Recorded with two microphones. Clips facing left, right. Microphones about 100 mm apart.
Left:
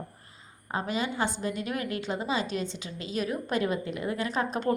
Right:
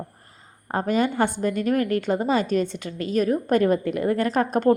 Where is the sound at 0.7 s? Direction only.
50° right (ahead or behind).